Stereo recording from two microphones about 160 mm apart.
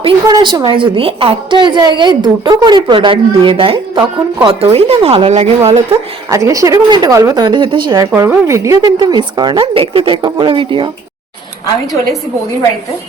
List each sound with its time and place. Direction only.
0.0 s a woman's voice: 25° right (ahead or behind); by 5.8 s 45° right (ahead or behind)
5.9 s a woman's voice: 20° right (ahead or behind)
8.1 s a woman's voice: 15° right (ahead or behind)